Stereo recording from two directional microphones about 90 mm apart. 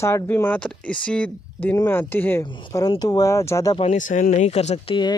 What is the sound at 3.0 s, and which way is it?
Speech, 45° left (ahead or behind).